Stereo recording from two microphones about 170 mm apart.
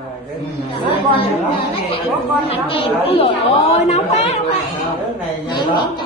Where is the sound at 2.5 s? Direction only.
35° left (ahead or behind).